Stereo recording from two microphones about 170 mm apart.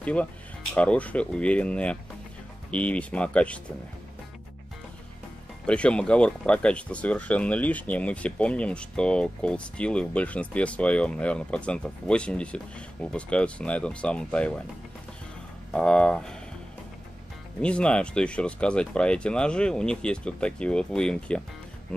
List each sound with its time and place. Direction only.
0.0 s speech: 10° left (ahead or behind)
5.7 s speech: 5° left (ahead or behind)
15.7 s speech: 5° left (ahead or behind)
17.6 s speech: 5° left (ahead or behind)